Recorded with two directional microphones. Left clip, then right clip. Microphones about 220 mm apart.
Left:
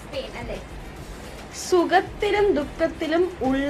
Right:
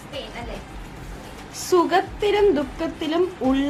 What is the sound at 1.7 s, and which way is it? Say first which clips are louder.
A woman's voice: right 1 dB; 20° right (ahead or behind).